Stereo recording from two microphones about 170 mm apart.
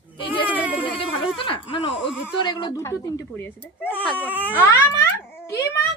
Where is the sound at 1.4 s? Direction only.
30° left (ahead or behind).